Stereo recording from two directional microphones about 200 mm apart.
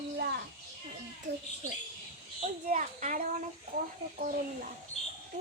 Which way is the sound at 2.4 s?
35° right (ahead or behind).